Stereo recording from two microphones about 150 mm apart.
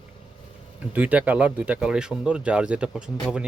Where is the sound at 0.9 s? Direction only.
10° right (ahead or behind).